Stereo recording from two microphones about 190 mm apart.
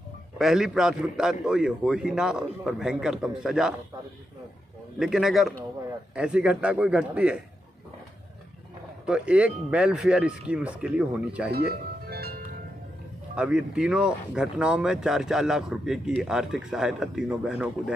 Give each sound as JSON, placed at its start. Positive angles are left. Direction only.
{"t": 0.4, "sound": "speech", "side_deg": 0}
{"t": 4.9, "sound": "speech", "side_deg": 0}
{"t": 9.0, "sound": "speech", "side_deg": -5}
{"t": 11.5, "sound": "music", "side_deg": -55}
{"t": 13.4, "sound": "speech", "side_deg": -5}